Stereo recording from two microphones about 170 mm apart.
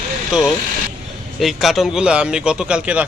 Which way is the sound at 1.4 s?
Centre (ahead or behind).